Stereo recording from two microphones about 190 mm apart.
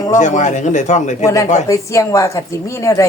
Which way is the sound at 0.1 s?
40° left (ahead or behind).